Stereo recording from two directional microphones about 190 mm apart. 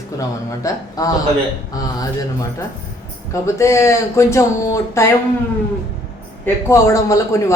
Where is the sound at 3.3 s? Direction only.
15° left (ahead or behind).